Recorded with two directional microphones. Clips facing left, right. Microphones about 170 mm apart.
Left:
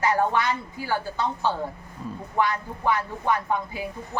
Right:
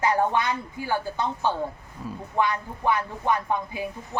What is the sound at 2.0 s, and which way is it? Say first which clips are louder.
Speech: even; 5° right (ahead or behind).